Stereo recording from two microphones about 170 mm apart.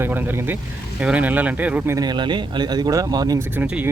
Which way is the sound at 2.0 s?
25° right (ahead or behind).